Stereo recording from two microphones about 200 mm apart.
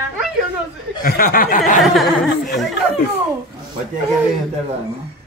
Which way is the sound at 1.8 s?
Centre (ahead or behind).